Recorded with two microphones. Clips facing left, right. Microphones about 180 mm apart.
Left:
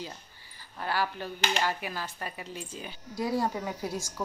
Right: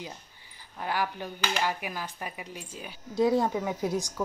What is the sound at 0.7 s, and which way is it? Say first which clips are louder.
A woman's voice: even; 15° right (ahead or behind).